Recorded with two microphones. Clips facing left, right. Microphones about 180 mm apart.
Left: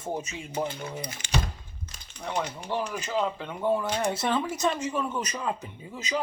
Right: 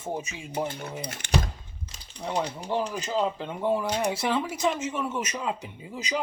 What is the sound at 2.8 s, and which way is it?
Speech, 35° right (ahead or behind).